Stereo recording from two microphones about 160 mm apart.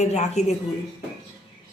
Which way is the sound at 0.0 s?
45° left (ahead or behind).